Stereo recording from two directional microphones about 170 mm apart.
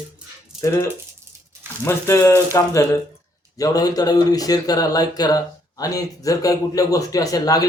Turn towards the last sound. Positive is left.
turn(degrees=20)  # may be behind; listen again after turning